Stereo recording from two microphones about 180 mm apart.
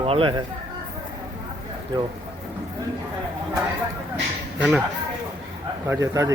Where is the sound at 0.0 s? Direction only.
30° right (ahead or behind).